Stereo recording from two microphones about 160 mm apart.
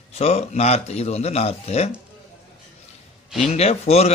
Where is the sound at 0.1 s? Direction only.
40° left (ahead or behind).